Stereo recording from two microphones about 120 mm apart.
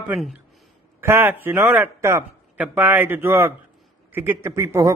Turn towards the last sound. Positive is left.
turn(degrees=-25)  # may be behind; listen again after turning